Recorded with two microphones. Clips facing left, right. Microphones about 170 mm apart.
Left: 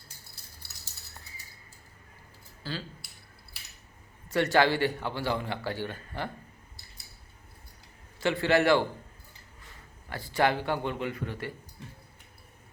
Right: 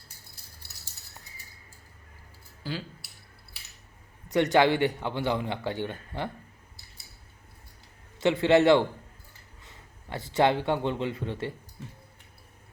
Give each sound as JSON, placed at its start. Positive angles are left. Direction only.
{"t": 2.6, "sound": "speech", "side_deg": -15}
{"t": 4.3, "sound": "a man's voice", "side_deg": -20}
{"t": 8.2, "sound": "a man's voice", "side_deg": -20}